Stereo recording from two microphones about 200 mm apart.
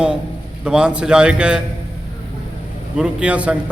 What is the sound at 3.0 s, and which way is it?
Speech, 5° right (ahead or behind).